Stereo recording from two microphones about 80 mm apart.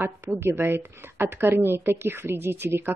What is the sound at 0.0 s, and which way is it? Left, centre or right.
Speech, right.